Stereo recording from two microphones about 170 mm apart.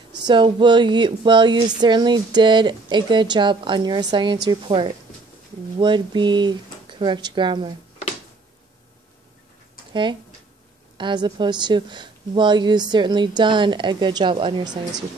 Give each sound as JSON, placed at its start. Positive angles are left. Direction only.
{"t": 0.3, "sound": "a woman's voice", "side_deg": -30}
{"t": 11.0, "sound": "a woman's voice", "side_deg": -25}